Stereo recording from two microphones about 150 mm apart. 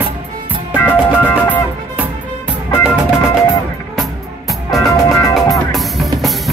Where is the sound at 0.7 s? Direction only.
10° left (ahead or behind).